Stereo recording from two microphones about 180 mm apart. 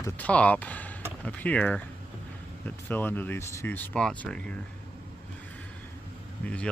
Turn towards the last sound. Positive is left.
turn(degrees=5)  # may be behind; listen again after turning